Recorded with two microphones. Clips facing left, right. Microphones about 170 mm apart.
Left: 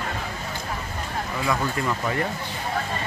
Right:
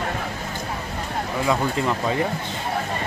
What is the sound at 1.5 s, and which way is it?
Speech, 20° right (ahead or behind).